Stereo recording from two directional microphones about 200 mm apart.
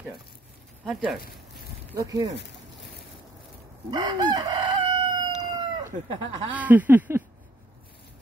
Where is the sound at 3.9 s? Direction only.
20° right (ahead or behind).